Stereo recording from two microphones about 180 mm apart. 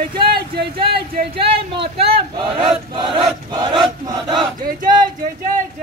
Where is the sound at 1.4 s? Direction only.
30° right (ahead or behind).